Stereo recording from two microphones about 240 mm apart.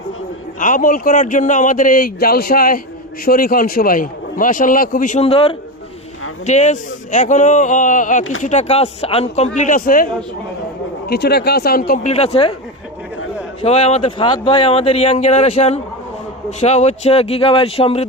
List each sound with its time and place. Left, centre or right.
0.6 s a man's voice: left
11.1 s a man's voice: left
12.1 s speech: left
13.6 s speech: left